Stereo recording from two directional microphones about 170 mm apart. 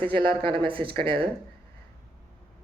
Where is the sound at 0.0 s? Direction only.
30° right (ahead or behind).